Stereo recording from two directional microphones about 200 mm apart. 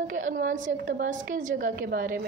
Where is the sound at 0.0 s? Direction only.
45° right (ahead or behind).